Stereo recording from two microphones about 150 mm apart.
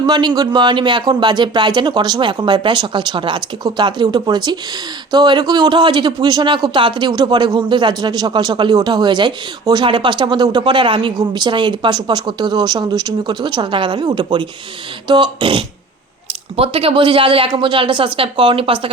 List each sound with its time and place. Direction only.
0.0 s speech: 30° right (ahead or behind)